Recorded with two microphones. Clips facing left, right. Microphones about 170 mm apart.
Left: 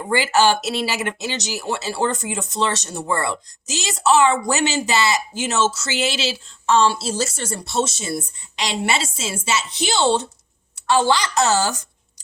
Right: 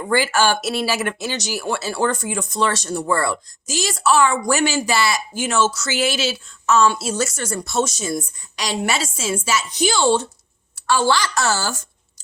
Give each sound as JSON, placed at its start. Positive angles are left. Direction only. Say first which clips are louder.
{"t": 0.3, "sound": "a woman's voice", "louder": "left 2 dB", "side_deg": 20}